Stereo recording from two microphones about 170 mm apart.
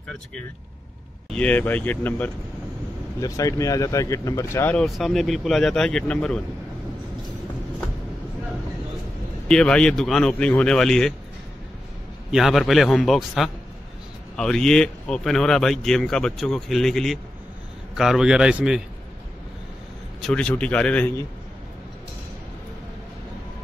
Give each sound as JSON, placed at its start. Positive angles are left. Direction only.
{"t": 1.3, "sound": "speech", "side_deg": 10}
{"t": 3.2, "sound": "speech", "side_deg": 20}
{"t": 4.7, "sound": "speech", "side_deg": 0}
{"t": 9.5, "sound": "speech", "side_deg": 5}
{"t": 12.3, "sound": "speech", "side_deg": 0}
{"t": 20.2, "sound": "speech", "side_deg": 5}